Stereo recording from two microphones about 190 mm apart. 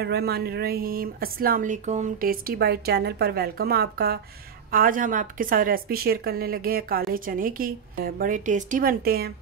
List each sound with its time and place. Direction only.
0.0 s a woman's voice: 60° right (ahead or behind)